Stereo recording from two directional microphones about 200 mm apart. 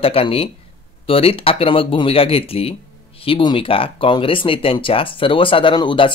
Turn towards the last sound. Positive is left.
turn(degrees=25)  # may be behind; listen again after turning